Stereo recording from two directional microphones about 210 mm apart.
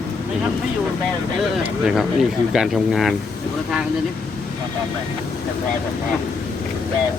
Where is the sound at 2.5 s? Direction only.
Centre (ahead or behind).